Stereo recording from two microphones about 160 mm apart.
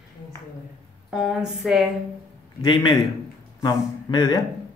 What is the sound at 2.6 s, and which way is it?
Speech, 25° left (ahead or behind).